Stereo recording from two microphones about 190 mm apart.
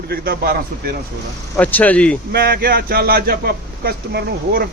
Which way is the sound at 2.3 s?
55° right (ahead or behind).